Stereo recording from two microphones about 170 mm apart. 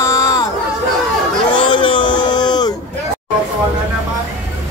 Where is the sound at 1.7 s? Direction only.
30° left (ahead or behind).